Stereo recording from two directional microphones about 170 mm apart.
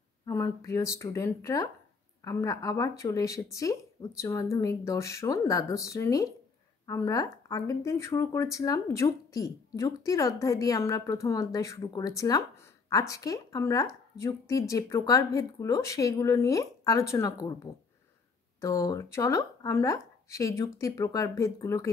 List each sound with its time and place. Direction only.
0.3 s speech: 15° left (ahead or behind)